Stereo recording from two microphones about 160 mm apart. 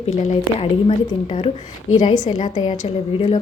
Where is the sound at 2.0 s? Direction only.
50° left (ahead or behind).